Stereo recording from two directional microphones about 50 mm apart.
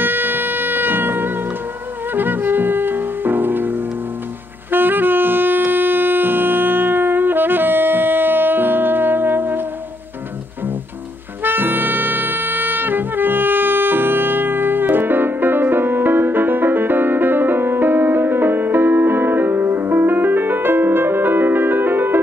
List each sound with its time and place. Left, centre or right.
0.0 s music: right
4.6 s saxophone: right
11.4 s music: right